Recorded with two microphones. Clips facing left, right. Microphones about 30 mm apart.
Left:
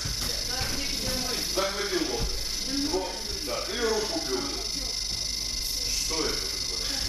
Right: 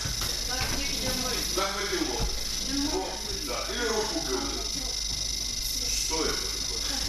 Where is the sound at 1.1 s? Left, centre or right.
Centre.